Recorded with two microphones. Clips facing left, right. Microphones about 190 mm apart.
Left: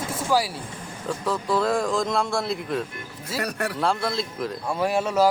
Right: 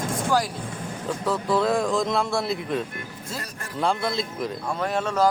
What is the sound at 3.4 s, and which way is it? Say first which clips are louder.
Speech: left 13 dB; 70° left (ahead or behind).